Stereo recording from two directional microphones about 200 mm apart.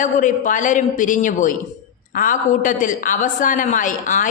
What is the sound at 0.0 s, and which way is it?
A woman's voice, 40° left (ahead or behind).